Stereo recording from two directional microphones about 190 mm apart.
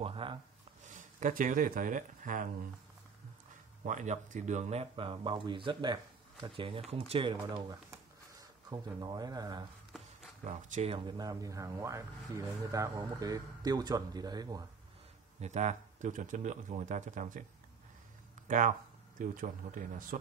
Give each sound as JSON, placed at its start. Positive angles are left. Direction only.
{"t": 0.0, "sound": "speech", "side_deg": -25}
{"t": 0.8, "sound": "speech", "side_deg": -45}
{"t": 3.8, "sound": "speech", "side_deg": -40}
{"t": 7.9, "sound": "a sound", "side_deg": -20}
{"t": 10.4, "sound": "speech", "side_deg": -35}
{"t": 15.4, "sound": "speech", "side_deg": -40}
{"t": 19.1, "sound": "speech", "side_deg": -45}